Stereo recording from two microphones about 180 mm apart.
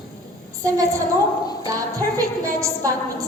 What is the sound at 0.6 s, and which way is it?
A woman's voice, 15° right (ahead or behind).